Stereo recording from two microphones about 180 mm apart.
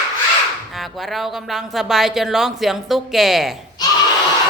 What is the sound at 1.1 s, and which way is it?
A woman's voice, centre (ahead or behind).